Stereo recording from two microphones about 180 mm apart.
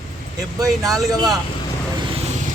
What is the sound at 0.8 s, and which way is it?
Speech, centre (ahead or behind).